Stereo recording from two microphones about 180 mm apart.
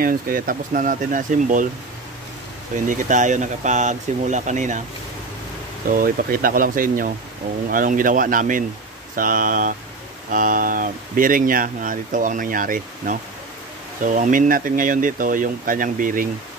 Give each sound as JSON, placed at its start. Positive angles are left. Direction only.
{"t": 0.0, "sound": "speech", "side_deg": -50}
{"t": 2.9, "sound": "speech", "side_deg": -45}
{"t": 5.9, "sound": "speech", "side_deg": -50}